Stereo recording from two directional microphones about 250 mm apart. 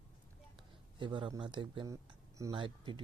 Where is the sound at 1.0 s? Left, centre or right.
Centre.